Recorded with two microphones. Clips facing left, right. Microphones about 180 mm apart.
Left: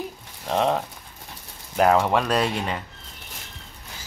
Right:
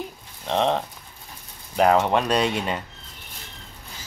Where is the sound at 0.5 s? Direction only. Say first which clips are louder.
Even; 5° left (ahead or behind).